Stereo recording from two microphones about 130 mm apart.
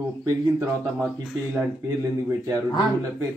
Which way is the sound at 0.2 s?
25° right (ahead or behind).